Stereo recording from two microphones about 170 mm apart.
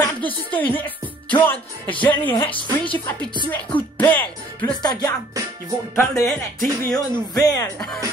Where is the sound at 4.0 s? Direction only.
10° left (ahead or behind).